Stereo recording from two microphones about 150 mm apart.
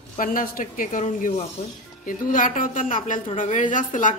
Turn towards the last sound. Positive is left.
turn(degrees=60)  # may be behind; listen again after turning